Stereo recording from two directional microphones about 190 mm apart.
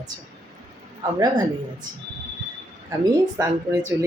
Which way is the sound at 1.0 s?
20° right (ahead or behind).